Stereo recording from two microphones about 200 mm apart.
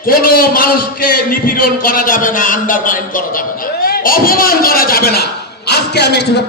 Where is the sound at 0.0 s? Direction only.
45° left (ahead or behind).